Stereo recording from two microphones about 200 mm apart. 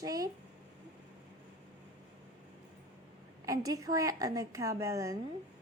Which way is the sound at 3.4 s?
15° right (ahead or behind).